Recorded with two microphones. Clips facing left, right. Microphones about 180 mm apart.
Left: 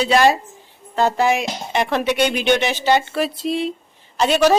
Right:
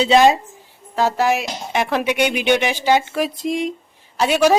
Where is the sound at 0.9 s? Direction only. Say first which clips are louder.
Left 1 dB; 5° right (ahead or behind).